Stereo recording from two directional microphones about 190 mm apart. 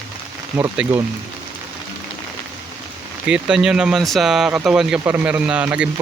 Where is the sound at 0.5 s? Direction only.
10° right (ahead or behind).